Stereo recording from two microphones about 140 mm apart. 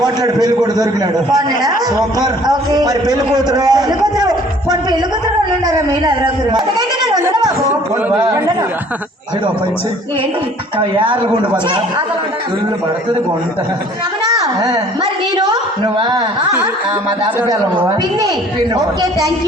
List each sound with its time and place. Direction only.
0.0 s a man's voice: 30° right (ahead or behind)
6.5 s speech: 30° right (ahead or behind)
10.8 s speech: 35° right (ahead or behind)
14.3 s a sound: 30° right (ahead or behind)
17.5 s a man's voice: 30° right (ahead or behind)